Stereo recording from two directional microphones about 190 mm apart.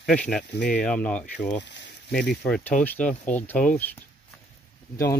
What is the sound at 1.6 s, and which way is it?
Speech, 65° left (ahead or behind).